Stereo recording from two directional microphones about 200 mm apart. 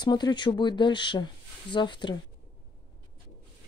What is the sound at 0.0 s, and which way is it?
Speech, 20° left (ahead or behind).